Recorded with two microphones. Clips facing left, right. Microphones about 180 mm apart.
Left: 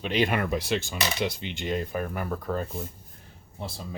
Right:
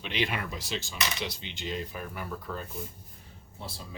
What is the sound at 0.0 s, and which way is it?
Speech, 45° left (ahead or behind).